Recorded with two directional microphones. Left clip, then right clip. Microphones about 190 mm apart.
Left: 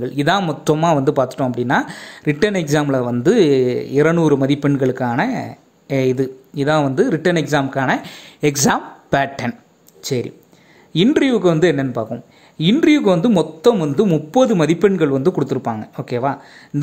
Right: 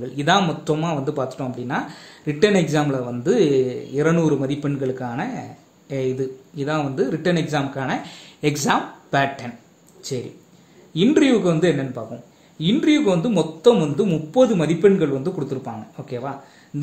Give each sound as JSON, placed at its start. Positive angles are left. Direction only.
{"t": 0.0, "sound": "speech", "side_deg": 40}